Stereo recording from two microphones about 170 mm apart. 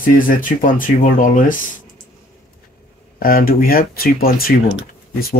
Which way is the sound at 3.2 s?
60° left (ahead or behind).